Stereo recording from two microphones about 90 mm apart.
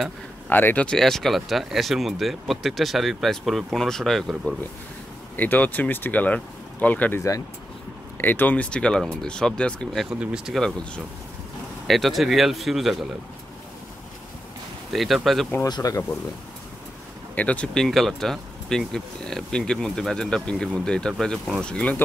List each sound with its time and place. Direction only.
0.5 s speech: 20° left (ahead or behind)
0.8 s speech: 5° left (ahead or behind)
5.3 s speech: 20° left (ahead or behind)
7.2 s speech: 40° left (ahead or behind)
8.2 s speech: 20° left (ahead or behind)
10.0 s speech: 10° right (ahead or behind)
10.5 s speech: 5° left (ahead or behind)
11.9 s speech: centre (ahead or behind)
14.9 s speech: centre (ahead or behind)
15.7 s speech: 40° left (ahead or behind)
17.4 s speech: 15° left (ahead or behind)